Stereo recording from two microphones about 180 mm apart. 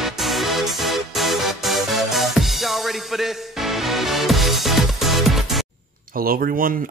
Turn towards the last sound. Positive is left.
turn(degrees=-50)  # may be behind; listen again after turning